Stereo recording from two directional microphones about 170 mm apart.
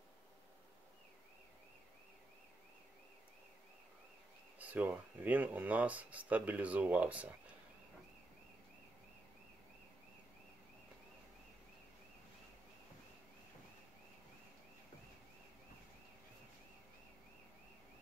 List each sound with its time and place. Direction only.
4.6 s speech: 10° right (ahead or behind)